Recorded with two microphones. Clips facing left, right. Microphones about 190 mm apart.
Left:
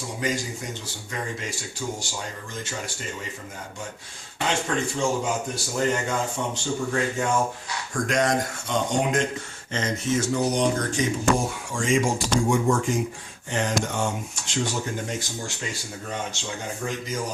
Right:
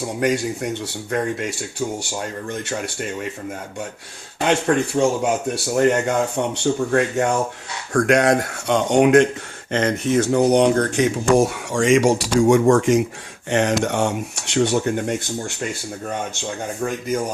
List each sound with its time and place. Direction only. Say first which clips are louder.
0.2 s speech: right 8 dB; 65° right (ahead or behind)
4.4 s speech: right 8 dB; 65° right (ahead or behind)